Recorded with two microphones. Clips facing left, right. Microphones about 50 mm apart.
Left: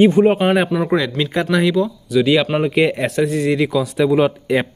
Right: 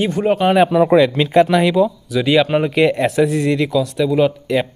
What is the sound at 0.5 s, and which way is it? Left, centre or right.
Speech, centre.